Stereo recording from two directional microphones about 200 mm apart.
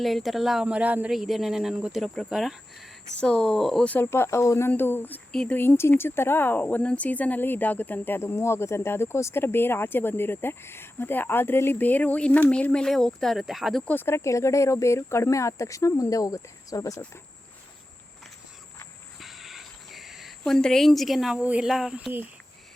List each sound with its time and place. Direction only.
0.0 s speech: centre (ahead or behind); by 17.1 s 15° left (ahead or behind)
19.2 s cricket: centre (ahead or behind)